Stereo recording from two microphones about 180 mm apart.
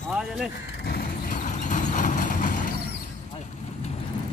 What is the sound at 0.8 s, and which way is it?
Vehicle, 60° left (ahead or behind).